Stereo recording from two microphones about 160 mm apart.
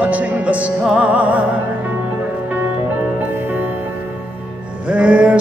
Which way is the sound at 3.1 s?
10° right (ahead or behind).